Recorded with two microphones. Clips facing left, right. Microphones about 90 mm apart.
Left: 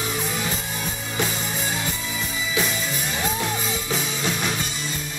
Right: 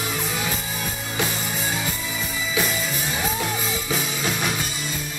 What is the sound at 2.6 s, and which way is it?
Music, 5° right (ahead or behind).